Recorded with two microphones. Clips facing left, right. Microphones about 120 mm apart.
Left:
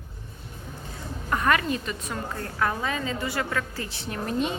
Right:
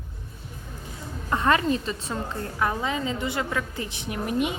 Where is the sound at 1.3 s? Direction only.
25° right (ahead or behind).